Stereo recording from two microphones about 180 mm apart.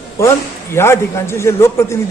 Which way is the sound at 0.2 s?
15° left (ahead or behind).